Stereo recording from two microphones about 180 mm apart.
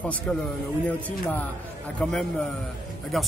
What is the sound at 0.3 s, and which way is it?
Speech, 10° left (ahead or behind).